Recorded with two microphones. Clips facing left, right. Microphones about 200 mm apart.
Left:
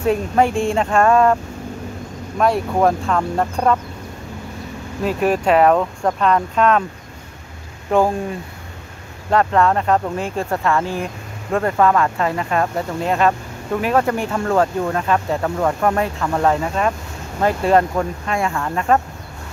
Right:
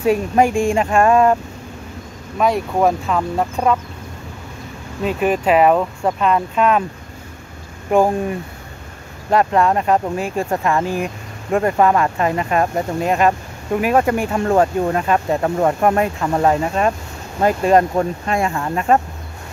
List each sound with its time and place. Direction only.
0.0 s speech: 10° right (ahead or behind)
5.0 s speech: centre (ahead or behind)
7.9 s speech: 15° right (ahead or behind)
9.3 s speech: 15° right (ahead or behind)
17.9 s speech: 30° right (ahead or behind)